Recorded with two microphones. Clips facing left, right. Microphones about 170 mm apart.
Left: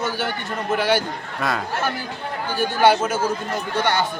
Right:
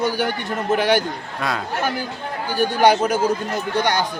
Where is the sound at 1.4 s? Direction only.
Centre (ahead or behind).